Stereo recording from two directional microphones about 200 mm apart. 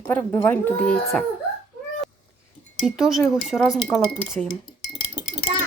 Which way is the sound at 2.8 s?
Centre (ahead or behind).